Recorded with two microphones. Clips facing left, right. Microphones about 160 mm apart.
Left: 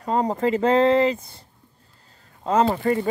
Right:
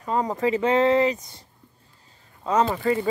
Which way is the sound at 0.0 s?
35° left (ahead or behind).